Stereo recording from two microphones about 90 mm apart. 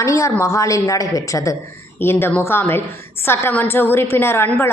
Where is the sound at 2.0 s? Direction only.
25° left (ahead or behind).